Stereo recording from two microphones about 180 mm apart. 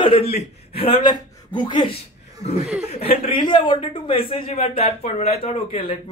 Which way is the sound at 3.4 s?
25° left (ahead or behind).